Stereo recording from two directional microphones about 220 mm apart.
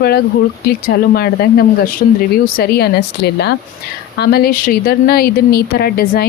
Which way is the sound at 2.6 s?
45° left (ahead or behind).